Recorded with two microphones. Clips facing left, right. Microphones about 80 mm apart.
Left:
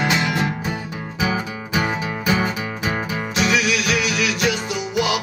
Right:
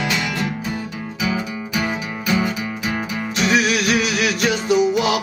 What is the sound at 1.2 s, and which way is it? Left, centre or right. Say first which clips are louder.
Music: even; left.